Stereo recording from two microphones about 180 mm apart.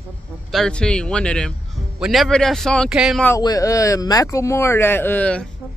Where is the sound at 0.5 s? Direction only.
5° left (ahead or behind).